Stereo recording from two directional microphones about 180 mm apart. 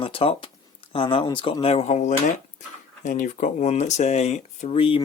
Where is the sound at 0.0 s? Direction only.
30° left (ahead or behind).